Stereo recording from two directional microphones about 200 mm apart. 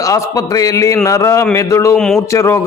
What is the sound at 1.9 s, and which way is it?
Speech, 5° left (ahead or behind).